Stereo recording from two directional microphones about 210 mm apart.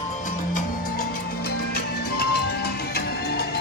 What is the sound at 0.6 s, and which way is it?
Music, 45° left (ahead or behind).